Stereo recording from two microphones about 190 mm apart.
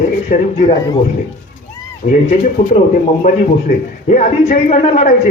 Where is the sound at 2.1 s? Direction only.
40° left (ahead or behind).